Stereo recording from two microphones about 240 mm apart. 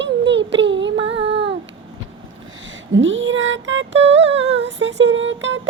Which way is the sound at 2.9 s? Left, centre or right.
Right.